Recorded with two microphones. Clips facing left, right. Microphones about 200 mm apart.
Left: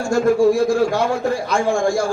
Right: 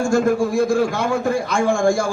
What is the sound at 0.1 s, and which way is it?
A man's voice, 50° right (ahead or behind).